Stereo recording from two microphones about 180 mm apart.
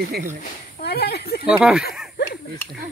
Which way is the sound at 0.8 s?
60° left (ahead or behind).